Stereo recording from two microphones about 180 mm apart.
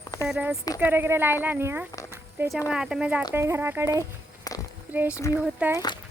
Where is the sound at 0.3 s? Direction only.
5° right (ahead or behind).